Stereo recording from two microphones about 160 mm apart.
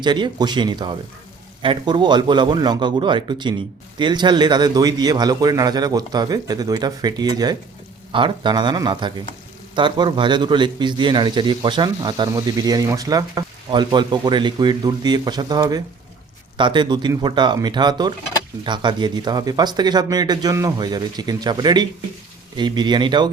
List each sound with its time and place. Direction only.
0.0 s a man's voice: 25° right (ahead or behind)